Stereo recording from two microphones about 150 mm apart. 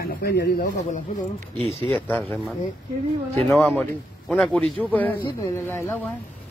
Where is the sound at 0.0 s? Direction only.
85° left.